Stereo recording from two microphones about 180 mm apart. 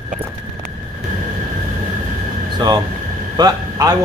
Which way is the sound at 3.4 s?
20° right (ahead or behind).